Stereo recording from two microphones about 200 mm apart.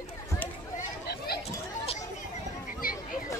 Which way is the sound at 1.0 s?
50° left (ahead or behind).